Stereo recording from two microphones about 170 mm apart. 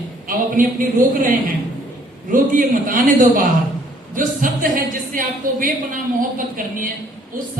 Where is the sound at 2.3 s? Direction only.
55° right (ahead or behind).